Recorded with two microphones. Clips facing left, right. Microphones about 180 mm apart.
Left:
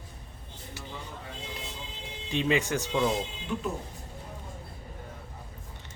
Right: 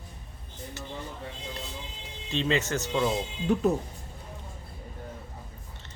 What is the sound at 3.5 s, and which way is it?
Speech, 40° right (ahead or behind).